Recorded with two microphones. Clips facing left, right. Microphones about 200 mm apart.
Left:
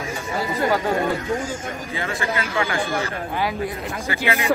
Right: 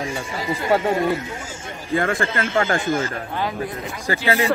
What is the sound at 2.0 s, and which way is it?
Speech, 50° right (ahead or behind).